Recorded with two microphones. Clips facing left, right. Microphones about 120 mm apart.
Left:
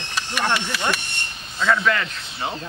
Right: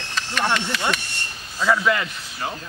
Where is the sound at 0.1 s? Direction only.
10° left (ahead or behind).